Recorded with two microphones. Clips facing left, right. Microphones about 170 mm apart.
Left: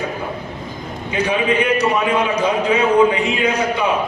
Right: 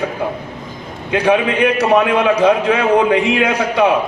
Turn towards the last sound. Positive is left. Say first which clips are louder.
# right 4 dB
turn(degrees=-65)  # may be behind; listen again after turning